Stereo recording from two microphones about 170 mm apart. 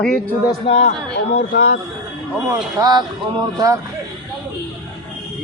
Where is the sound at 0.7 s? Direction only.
30° left (ahead or behind).